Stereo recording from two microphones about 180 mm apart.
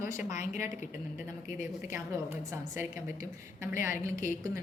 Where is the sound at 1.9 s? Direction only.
10° right (ahead or behind).